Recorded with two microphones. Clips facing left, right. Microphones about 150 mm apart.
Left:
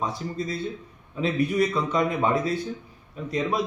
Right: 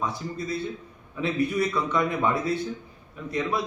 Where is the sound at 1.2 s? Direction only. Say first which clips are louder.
Left 2 dB; 20° left (ahead or behind).